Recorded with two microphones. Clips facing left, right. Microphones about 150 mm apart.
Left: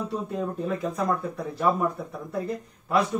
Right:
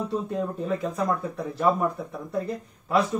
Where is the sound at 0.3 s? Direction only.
Centre (ahead or behind).